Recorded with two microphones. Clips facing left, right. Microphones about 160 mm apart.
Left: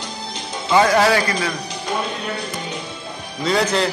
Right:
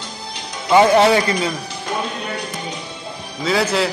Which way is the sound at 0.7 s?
25° right (ahead or behind).